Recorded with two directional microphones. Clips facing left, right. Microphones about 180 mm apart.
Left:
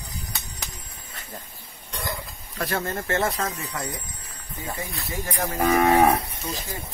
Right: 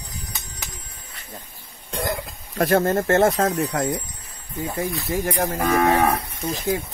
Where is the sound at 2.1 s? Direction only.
50° right (ahead or behind).